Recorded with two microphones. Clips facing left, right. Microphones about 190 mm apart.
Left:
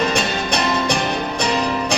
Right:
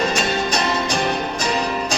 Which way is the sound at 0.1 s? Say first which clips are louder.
Even; 60° left (ahead or behind).